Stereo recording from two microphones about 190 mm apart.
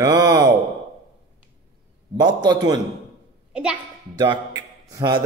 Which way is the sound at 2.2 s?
20° right (ahead or behind).